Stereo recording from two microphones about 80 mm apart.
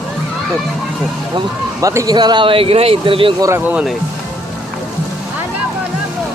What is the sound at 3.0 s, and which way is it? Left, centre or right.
Speech, right.